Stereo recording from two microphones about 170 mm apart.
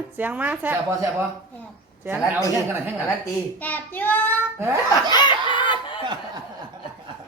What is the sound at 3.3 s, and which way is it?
A child's voice, 10° left (ahead or behind).